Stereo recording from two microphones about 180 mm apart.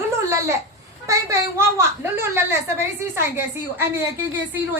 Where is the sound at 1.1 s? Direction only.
15° right (ahead or behind).